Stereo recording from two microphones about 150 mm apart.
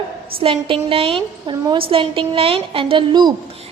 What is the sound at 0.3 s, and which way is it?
A woman's voice, 35° right (ahead or behind).